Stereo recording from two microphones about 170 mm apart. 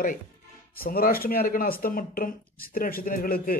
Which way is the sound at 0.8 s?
60° left (ahead or behind).